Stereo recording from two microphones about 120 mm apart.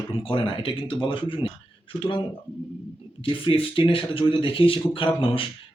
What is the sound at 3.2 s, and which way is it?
Speech, 50° left (ahead or behind).